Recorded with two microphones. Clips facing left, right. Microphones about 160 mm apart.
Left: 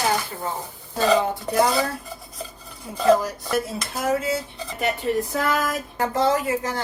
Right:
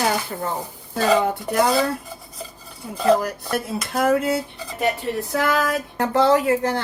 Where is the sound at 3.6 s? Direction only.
60° right (ahead or behind).